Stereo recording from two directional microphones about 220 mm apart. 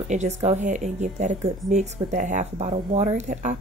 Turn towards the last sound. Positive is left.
turn(degrees=-30)  # may be behind; listen again after turning